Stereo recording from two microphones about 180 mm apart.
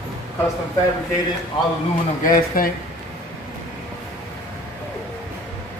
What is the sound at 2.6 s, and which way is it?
Speech, 50° left (ahead or behind).